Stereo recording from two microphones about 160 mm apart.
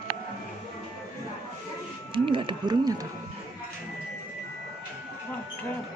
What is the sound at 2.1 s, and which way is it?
Speech, 30° right (ahead or behind).